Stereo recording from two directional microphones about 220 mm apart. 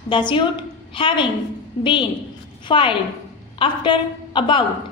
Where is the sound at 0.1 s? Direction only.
20° left (ahead or behind).